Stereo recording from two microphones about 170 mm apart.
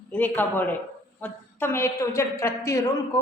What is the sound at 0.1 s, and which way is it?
A man's voice, 10° left (ahead or behind).